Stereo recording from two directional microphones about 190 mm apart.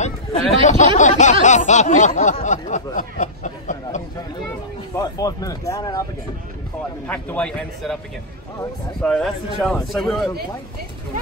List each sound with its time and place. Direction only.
0.0 s speech: 40° left (ahead or behind)
4.9 s speech: 20° left (ahead or behind)
7.1 s a man's voice: 10° left (ahead or behind)
9.0 s a man's voice: 5° left (ahead or behind)